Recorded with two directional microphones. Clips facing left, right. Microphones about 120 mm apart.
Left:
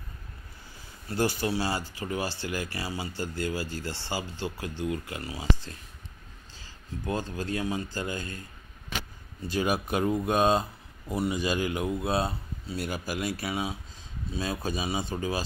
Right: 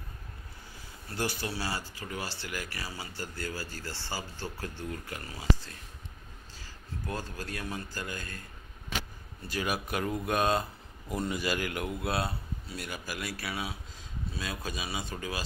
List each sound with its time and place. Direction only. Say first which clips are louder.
1.1 s speech: left 7 dB; 25° left (ahead or behind)
6.6 s speech: left 4 dB; 20° left (ahead or behind)
9.5 s speech: left 5 dB; 25° left (ahead or behind)
12.7 s speech: left 7 dB; 35° left (ahead or behind)